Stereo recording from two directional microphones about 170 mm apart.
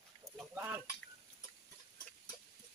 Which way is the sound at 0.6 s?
15° right (ahead or behind).